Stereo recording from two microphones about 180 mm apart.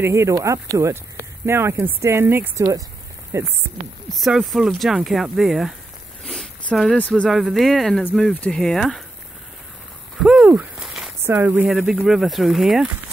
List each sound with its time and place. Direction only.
0.0 s speech: 15° right (ahead or behind)
4.1 s speech: centre (ahead or behind)
10.2 s a sound: 5° right (ahead or behind)
11.2 s speech: 10° right (ahead or behind)